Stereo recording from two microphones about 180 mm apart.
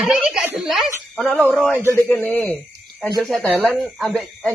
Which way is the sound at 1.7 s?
15° right (ahead or behind).